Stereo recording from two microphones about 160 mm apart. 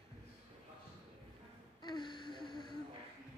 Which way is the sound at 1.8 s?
25° left (ahead or behind).